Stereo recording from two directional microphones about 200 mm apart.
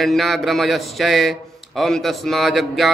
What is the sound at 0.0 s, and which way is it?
A man's voice, centre (ahead or behind).